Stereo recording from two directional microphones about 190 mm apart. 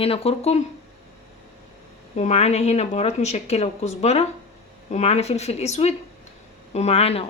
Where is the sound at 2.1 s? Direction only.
35° left (ahead or behind).